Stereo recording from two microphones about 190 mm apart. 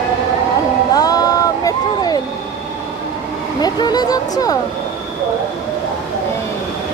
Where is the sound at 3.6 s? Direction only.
20° left (ahead or behind).